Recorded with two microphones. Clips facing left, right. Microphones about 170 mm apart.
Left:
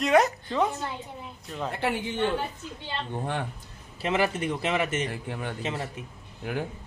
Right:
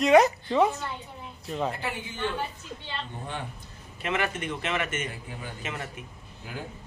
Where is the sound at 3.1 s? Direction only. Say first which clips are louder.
Left 6 dB; 55° left (ahead or behind).